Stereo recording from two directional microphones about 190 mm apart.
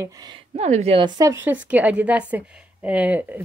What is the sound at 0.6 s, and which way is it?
A woman's voice, 35° right (ahead or behind).